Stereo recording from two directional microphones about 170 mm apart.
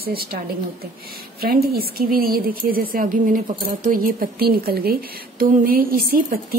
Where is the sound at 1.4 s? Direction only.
65° right (ahead or behind).